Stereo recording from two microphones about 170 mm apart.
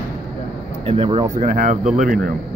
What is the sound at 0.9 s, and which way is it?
Speech, 35° right (ahead or behind).